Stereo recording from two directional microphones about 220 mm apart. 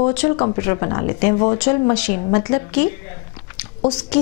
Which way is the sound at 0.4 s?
20° left (ahead or behind).